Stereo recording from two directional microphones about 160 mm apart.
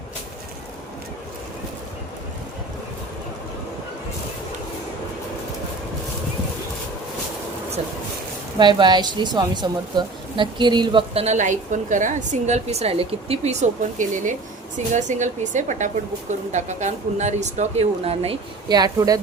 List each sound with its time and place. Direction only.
8.5 s a woman's voice: 30° right (ahead or behind)
18.7 s speech: 25° right (ahead or behind)